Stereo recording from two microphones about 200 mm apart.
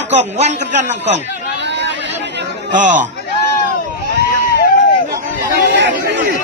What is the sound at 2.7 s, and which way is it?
Speech, 40° right (ahead or behind).